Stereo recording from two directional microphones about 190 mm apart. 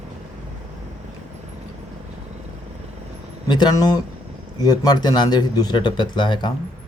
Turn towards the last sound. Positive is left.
turn(degrees=25)  # may be behind; listen again after turning